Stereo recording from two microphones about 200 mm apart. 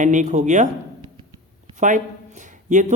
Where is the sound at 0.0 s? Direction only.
40° right (ahead or behind).